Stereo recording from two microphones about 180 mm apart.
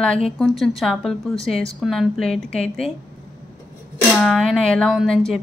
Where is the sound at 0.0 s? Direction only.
5° left (ahead or behind).